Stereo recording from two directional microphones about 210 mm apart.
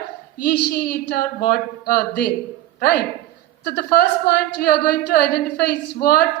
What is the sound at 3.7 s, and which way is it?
A woman's voice, 45° left (ahead or behind).